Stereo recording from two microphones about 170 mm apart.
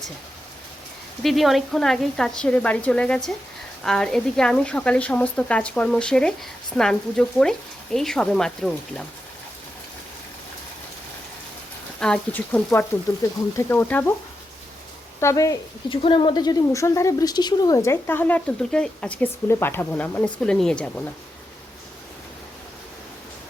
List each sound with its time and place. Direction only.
1.2 s a woman's voice: centre (ahead or behind)
11.9 s speech: 5° left (ahead or behind)
15.2 s speech: 20° left (ahead or behind)
15.9 s speech: 30° left (ahead or behind); by 21.0 s 5° left (ahead or behind)